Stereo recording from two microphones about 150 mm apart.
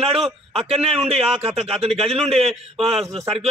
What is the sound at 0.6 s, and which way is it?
Speech, 40° right (ahead or behind).